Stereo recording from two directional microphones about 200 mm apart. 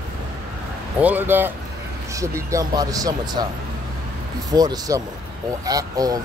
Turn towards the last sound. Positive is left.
turn(degrees=-20)  # may be behind; listen again after turning